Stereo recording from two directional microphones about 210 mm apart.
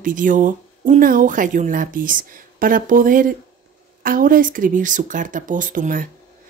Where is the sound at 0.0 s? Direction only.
40° right (ahead or behind).